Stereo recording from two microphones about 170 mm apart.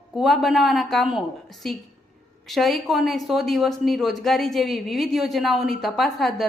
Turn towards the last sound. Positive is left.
turn(degrees=0)  # may be behind; listen again after turning